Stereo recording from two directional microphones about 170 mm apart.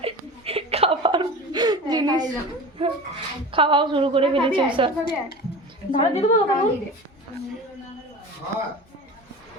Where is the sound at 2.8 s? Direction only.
35° right (ahead or behind).